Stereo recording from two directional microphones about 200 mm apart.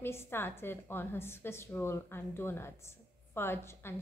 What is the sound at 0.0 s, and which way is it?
A woman's voice, 10° left (ahead or behind).